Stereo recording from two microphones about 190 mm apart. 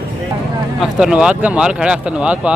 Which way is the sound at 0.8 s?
5° right (ahead or behind).